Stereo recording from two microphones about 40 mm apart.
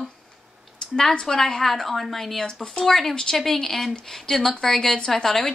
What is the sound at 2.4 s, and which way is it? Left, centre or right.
Speech, centre.